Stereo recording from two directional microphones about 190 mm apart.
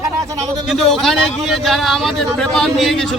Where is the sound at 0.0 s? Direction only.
15° right (ahead or behind).